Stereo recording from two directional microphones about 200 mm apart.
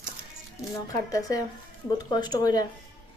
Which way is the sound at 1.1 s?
15° left (ahead or behind).